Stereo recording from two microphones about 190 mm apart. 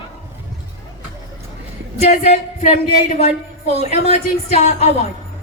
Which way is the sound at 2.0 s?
35° left (ahead or behind).